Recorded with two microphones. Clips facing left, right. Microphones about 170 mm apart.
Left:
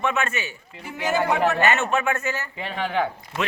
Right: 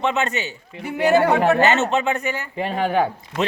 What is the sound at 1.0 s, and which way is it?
Speech, 60° right (ahead or behind).